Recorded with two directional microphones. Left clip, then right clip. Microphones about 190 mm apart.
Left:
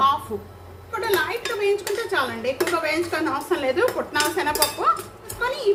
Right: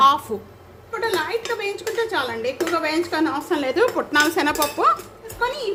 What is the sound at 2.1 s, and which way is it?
A woman's voice, 40° right (ahead or behind).